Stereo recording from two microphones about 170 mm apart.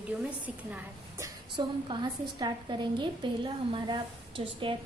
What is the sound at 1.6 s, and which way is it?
A woman's voice, 25° right (ahead or behind).